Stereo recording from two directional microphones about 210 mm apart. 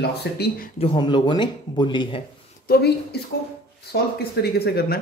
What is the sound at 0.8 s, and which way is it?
Speech, 20° left (ahead or behind).